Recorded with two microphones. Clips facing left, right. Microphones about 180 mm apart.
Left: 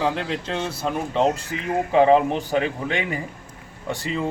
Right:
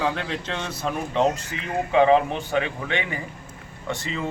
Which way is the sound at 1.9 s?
35° left (ahead or behind).